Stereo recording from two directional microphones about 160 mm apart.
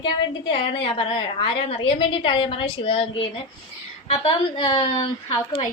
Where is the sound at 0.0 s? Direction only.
35° left (ahead or behind).